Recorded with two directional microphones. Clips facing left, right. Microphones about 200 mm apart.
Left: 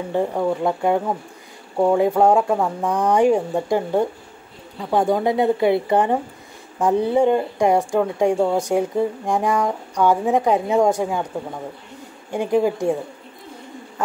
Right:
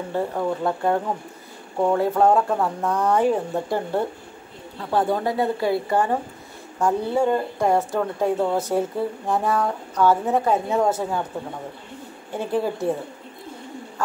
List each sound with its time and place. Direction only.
0.1 s speech: 15° left (ahead or behind)
12.3 s speech: 15° left (ahead or behind)